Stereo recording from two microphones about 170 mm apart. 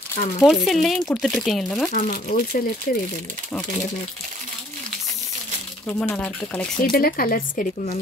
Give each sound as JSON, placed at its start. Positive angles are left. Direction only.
{"t": 0.4, "sound": "speech", "side_deg": 0}
{"t": 1.9, "sound": "speech", "side_deg": 50}
{"t": 5.9, "sound": "speech", "side_deg": 5}
{"t": 6.8, "sound": "speech", "side_deg": 60}